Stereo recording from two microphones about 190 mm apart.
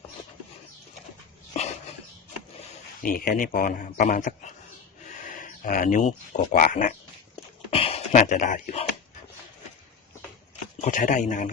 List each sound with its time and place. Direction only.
3.0 s a man's voice: 50° left (ahead or behind)
7.7 s a sound: 30° left (ahead or behind)
10.8 s speech: 40° left (ahead or behind)